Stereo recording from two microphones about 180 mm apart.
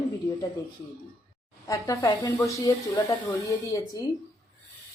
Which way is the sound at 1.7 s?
20° left (ahead or behind).